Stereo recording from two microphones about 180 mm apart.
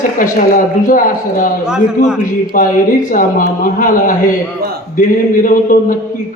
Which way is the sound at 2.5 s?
50° left (ahead or behind).